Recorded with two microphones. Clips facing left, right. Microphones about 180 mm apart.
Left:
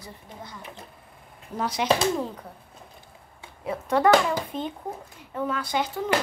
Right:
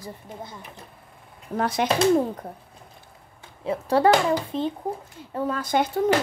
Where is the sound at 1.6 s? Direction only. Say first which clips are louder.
Right 4 dB; 55° right (ahead or behind).